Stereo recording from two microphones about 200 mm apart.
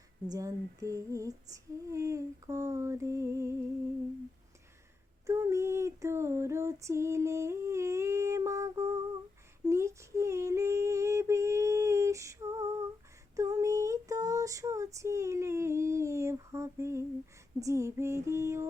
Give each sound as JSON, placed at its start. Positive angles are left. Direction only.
{"t": 0.3, "sound": "female singing", "side_deg": -15}
{"t": 5.2, "sound": "female singing", "side_deg": -15}
{"t": 9.6, "sound": "a sound", "side_deg": -15}
{"t": 13.3, "sound": "female singing", "side_deg": -15}